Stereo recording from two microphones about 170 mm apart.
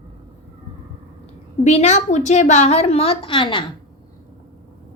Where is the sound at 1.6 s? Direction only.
40° left (ahead or behind).